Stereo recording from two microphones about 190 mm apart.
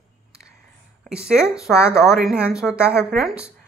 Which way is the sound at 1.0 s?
5° right (ahead or behind).